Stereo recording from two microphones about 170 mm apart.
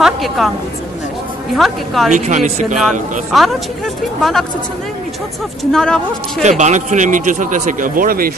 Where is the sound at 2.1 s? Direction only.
45° right (ahead or behind).